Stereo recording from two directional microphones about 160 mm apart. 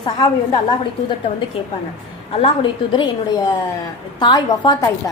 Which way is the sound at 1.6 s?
35° left (ahead or behind).